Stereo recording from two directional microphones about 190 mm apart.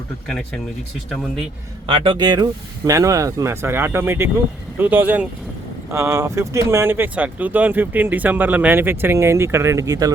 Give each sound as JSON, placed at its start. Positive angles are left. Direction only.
{"t": 0.3, "sound": "speech", "side_deg": 5}
{"t": 1.9, "sound": "speech", "side_deg": -25}